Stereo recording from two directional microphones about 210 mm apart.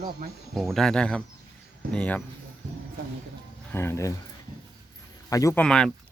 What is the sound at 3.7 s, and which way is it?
Speech, 10° left (ahead or behind).